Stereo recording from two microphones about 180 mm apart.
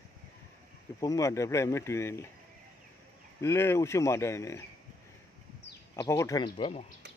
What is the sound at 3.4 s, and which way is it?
A man's voice, 15° left (ahead or behind).